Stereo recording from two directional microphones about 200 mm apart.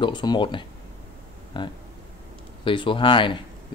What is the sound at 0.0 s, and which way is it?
Speech, 20° left (ahead or behind).